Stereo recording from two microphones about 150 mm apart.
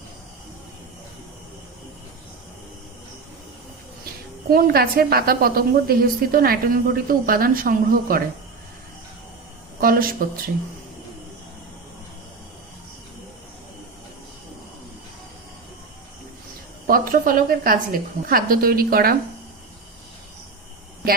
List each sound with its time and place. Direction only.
4.4 s a woman's voice: 85° right
9.8 s a woman's voice: 75° right (ahead or behind)
16.8 s a woman's voice: 70° right (ahead or behind)